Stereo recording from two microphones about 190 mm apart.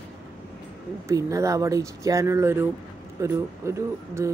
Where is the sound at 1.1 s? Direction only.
15° right (ahead or behind).